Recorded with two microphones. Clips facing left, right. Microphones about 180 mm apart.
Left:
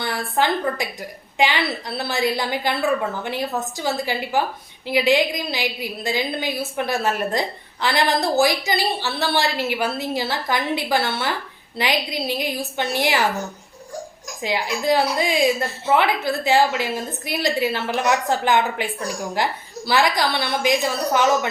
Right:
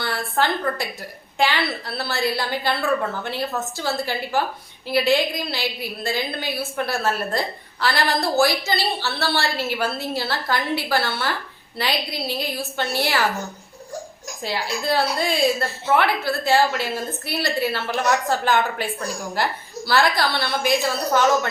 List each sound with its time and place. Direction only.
0.0 s a woman's voice: 15° left (ahead or behind)
14.4 s a woman's voice: 15° left (ahead or behind)